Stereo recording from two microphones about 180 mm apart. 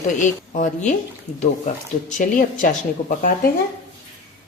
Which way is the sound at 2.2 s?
45° left (ahead or behind).